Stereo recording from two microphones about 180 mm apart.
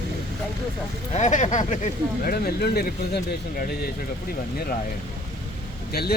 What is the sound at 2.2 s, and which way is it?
Speech, 60° left (ahead or behind).